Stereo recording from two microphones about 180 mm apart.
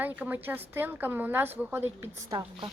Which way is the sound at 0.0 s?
10° right (ahead or behind).